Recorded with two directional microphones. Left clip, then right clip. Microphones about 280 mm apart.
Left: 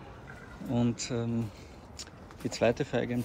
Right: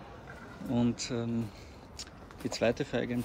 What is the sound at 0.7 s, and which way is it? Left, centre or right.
Speech, centre.